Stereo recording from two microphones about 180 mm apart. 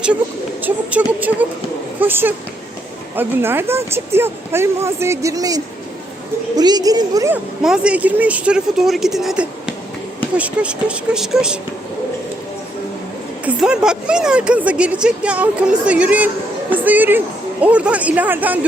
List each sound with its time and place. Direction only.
0.6 s a woman's voice: 10° right (ahead or behind)
7.6 s speech: 5° right (ahead or behind)
13.4 s a woman's voice: 5° right (ahead or behind)